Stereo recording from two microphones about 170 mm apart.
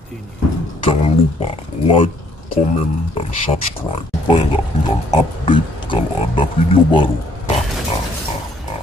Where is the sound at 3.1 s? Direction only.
35° left (ahead or behind).